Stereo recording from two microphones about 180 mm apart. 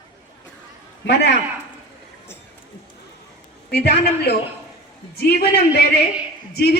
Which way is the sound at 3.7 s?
65° left (ahead or behind).